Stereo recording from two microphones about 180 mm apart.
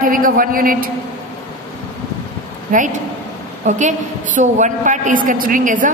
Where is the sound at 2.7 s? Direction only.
45° right (ahead or behind).